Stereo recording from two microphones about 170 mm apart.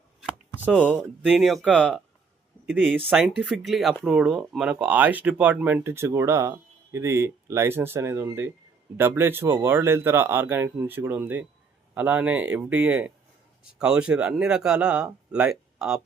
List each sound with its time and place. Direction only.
0.2 s chopping: 10° right (ahead or behind)
1.3 s speech: centre (ahead or behind)